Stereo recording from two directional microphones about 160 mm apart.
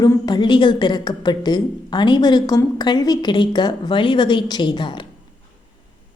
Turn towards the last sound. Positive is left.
turn(degrees=30)  # may be behind; listen again after turning